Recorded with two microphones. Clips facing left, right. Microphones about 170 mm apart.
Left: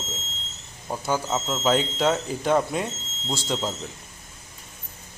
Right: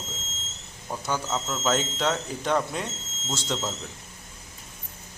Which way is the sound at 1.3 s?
25° left (ahead or behind).